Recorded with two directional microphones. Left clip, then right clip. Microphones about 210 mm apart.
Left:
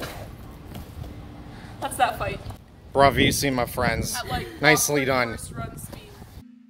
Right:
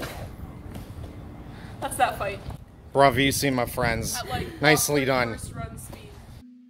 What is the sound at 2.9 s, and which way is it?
Speech, centre (ahead or behind).